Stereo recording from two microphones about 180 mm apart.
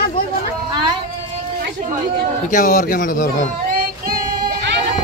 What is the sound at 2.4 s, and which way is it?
A man's voice, 45° left (ahead or behind).